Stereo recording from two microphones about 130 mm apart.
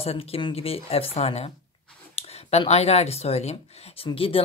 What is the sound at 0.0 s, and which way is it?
Speech, 50° left (ahead or behind).